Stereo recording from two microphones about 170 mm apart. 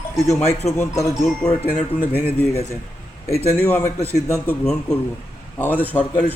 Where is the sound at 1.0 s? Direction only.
20° left (ahead or behind).